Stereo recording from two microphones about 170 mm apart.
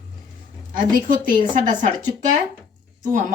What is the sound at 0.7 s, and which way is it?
Speech, 55° right (ahead or behind).